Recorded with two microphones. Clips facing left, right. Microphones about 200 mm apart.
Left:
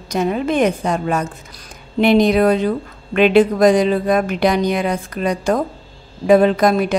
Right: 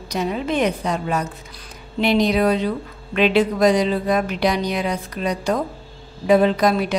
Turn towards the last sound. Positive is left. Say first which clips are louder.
# left 3 dB
turn(degrees=50)  # may be behind; listen again after turning